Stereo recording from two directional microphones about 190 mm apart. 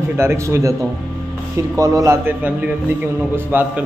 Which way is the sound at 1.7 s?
20° right (ahead or behind).